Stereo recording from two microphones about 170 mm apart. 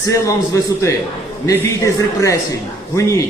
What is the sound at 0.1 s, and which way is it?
A man's voice, 20° left (ahead or behind).